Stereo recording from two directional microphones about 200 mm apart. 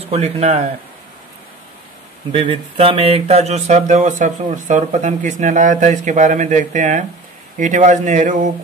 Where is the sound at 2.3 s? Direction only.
25° right (ahead or behind).